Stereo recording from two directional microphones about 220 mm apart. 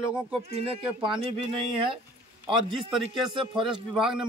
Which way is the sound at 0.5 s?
30° right (ahead or behind).